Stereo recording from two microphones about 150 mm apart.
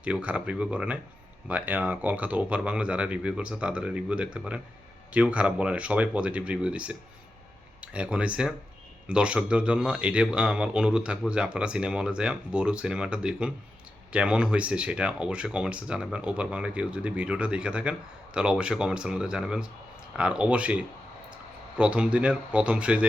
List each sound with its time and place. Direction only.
0.0 s speech: 10° right (ahead or behind)